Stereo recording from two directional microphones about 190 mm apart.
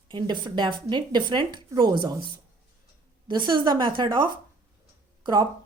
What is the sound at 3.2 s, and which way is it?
A woman's voice, 25° right (ahead or behind).